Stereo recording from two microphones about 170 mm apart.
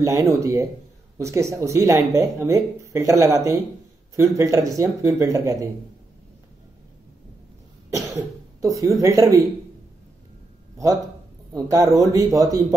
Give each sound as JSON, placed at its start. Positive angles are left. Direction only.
{"t": 0.0, "sound": "speech", "side_deg": -20}
{"t": 7.9, "sound": "speech", "side_deg": -20}
{"t": 11.5, "sound": "speech", "side_deg": -20}